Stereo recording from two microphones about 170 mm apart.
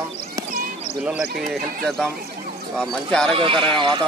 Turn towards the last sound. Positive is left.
turn(degrees=-30)  # may be behind; listen again after turning